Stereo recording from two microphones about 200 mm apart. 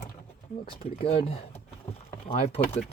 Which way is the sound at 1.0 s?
30° left (ahead or behind).